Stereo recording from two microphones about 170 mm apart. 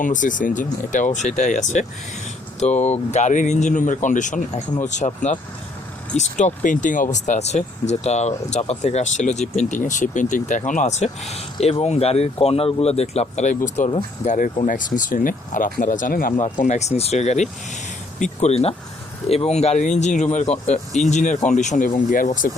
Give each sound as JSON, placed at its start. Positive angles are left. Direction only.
{"t": 0.0, "sound": "speech", "side_deg": 50}